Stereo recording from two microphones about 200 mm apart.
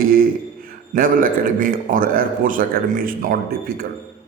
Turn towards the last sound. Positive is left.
turn(degrees=-45)  # may be behind; listen again after turning